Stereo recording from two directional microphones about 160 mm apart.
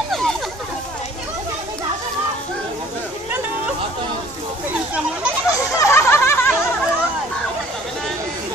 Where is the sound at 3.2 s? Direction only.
15° right (ahead or behind).